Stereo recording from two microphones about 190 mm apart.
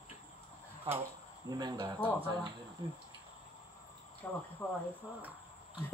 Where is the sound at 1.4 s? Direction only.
20° right (ahead or behind).